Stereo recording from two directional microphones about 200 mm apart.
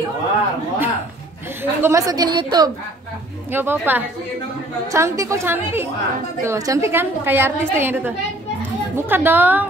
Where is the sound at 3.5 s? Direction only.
10° right (ahead or behind).